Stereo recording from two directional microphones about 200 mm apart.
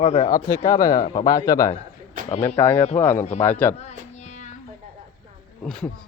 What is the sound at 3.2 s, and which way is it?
Speech, 35° left (ahead or behind).